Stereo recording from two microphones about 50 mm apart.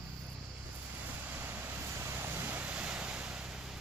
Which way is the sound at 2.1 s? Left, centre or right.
Right.